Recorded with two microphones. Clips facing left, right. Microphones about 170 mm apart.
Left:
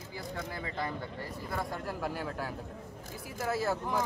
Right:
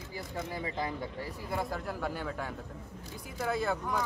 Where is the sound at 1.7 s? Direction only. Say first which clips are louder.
Even; centre (ahead or behind).